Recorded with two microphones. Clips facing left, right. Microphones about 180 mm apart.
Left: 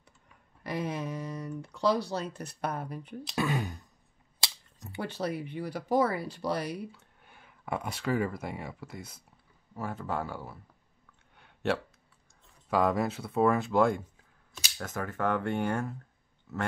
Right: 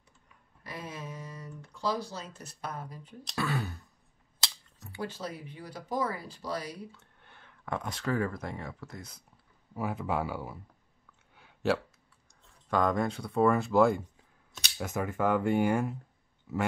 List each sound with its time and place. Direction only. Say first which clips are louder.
0.7 s speech: left 8 dB; 65° left (ahead or behind)
3.3 s speech: left 2 dB; 20° left (ahead or behind)
5.0 s speech: left 4 dB; 65° left (ahead or behind)
6.9 s speech: left 2 dB; 10° left (ahead or behind)
9.8 s speech: right 2 dB; 10° right (ahead or behind)
11.3 s a sound: right 1 dB; centre (ahead or behind)
12.6 s speech: left 1 dB; 5° left (ahead or behind)
14.5 s a sound: right 3 dB; centre (ahead or behind)
14.9 s speech: right 2 dB; 10° right (ahead or behind)